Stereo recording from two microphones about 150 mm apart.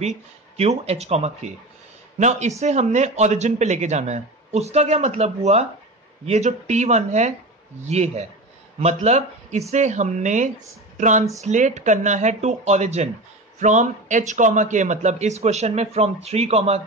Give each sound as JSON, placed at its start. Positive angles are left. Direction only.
{"t": 0.0, "sound": "a man's voice", "side_deg": -45}